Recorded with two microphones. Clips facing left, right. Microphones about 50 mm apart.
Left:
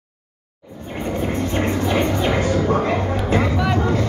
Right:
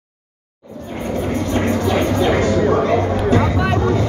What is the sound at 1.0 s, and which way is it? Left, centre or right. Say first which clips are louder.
Vehicle: right 2 dB; left.